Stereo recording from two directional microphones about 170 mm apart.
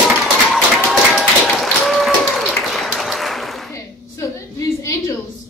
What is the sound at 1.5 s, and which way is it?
Applause, centre (ahead or behind).